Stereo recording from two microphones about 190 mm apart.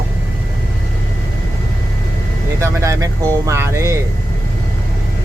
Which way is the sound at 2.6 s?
15° right (ahead or behind).